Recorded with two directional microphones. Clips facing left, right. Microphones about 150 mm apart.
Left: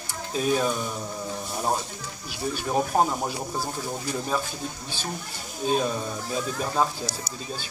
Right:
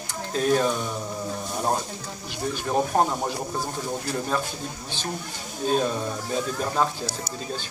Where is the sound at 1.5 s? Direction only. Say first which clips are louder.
Right 1 dB; centre (ahead or behind).